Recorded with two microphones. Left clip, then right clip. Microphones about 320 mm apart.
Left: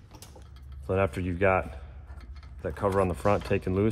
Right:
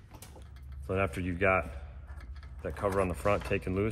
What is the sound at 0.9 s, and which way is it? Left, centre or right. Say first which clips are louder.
Speech: left 4 dB; left.